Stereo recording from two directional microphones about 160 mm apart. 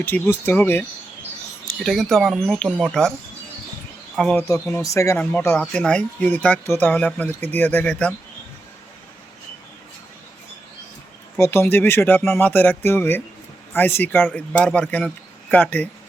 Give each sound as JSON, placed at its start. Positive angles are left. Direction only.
{"t": 0.0, "sound": "speech", "side_deg": 15}
{"t": 1.8, "sound": "speech", "side_deg": 0}
{"t": 4.2, "sound": "speech", "side_deg": 5}
{"t": 4.4, "sound": "speech", "side_deg": 20}
{"t": 11.3, "sound": "speech", "side_deg": 15}